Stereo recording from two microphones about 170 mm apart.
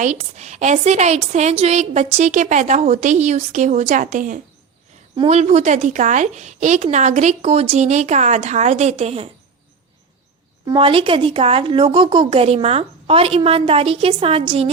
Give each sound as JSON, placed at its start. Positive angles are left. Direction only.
{"t": 0.0, "sound": "a woman's voice", "side_deg": -45}
{"t": 5.1, "sound": "a woman's voice", "side_deg": -35}
{"t": 10.7, "sound": "speech", "side_deg": -30}